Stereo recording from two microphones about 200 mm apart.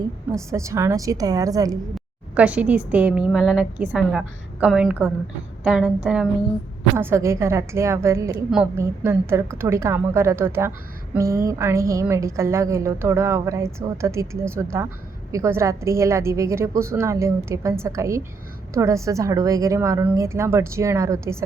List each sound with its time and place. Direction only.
0.3 s a woman's voice: 15° right (ahead or behind)
2.3 s a woman's voice: 5° right (ahead or behind)